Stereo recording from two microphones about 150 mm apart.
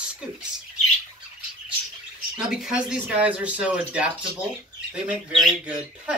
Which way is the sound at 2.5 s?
5° right (ahead or behind).